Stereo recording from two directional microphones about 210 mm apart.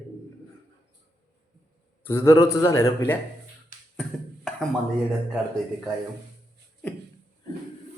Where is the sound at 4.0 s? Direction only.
Centre (ahead or behind).